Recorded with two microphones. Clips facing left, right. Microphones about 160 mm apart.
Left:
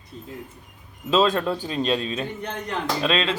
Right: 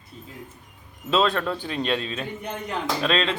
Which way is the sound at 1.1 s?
20° left (ahead or behind).